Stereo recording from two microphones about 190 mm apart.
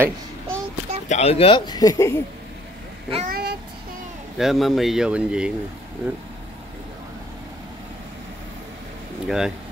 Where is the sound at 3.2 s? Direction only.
50° right (ahead or behind).